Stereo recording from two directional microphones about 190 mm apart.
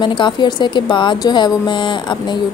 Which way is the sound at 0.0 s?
25° left (ahead or behind).